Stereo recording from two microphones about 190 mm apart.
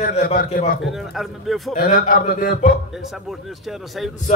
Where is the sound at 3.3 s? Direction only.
Centre (ahead or behind).